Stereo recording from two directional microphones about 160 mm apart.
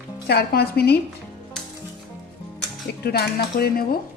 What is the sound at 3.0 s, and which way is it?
Speech, 75° left (ahead or behind).